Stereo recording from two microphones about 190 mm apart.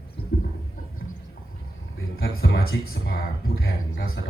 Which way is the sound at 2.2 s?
55° left (ahead or behind).